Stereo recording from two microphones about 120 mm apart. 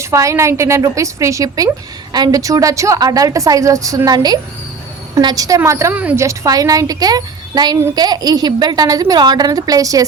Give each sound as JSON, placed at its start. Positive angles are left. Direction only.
{"t": 0.0, "sound": "a woman's voice", "side_deg": -25}
{"t": 5.9, "sound": "a woman's voice", "side_deg": -10}
{"t": 6.1, "sound": "speech", "side_deg": -25}